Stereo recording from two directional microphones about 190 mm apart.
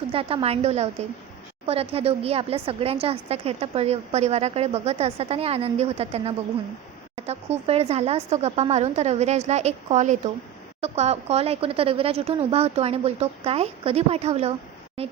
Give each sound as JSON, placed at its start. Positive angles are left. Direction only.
{"t": 0.1, "sound": "a woman's voice", "side_deg": -30}